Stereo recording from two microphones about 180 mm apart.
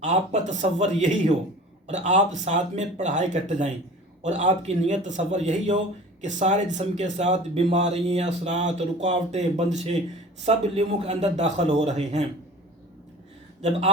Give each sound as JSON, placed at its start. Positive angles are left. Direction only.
{"t": 0.0, "sound": "speech", "side_deg": -40}
{"t": 13.6, "sound": "speech", "side_deg": -35}